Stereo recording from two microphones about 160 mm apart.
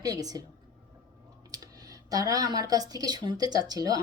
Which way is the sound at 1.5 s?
20° right (ahead or behind).